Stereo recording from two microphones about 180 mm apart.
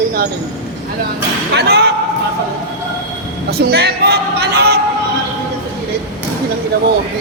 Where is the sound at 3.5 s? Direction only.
60° right (ahead or behind).